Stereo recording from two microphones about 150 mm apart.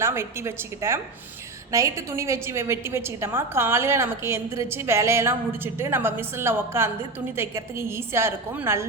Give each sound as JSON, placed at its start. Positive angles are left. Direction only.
{"t": 0.0, "sound": "a woman's voice", "side_deg": -15}